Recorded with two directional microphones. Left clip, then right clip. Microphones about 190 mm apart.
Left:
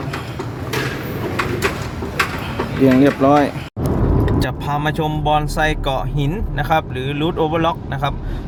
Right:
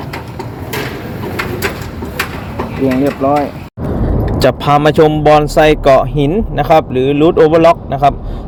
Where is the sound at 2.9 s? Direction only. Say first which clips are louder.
Right 1 dB; 25° left (ahead or behind).